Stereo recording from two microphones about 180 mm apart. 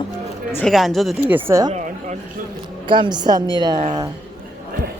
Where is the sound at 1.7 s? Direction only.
40° right (ahead or behind).